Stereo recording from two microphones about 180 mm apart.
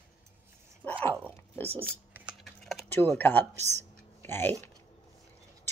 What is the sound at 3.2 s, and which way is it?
Speech, 10° left (ahead or behind).